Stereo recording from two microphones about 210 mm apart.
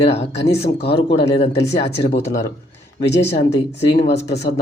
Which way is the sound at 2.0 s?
30° left (ahead or behind).